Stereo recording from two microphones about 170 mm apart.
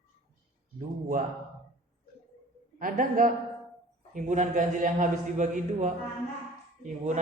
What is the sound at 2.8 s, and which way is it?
A man's voice, 55° right (ahead or behind).